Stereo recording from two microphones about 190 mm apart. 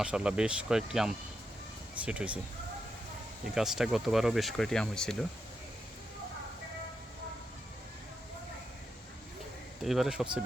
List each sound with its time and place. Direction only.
0.0 s speech: 5° right (ahead or behind)
3.5 s speech: centre (ahead or behind)
9.8 s speech: centre (ahead or behind)